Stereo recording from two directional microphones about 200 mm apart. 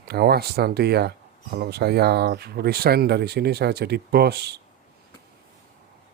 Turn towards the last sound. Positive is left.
turn(degrees=-55)  # may be behind; listen again after turning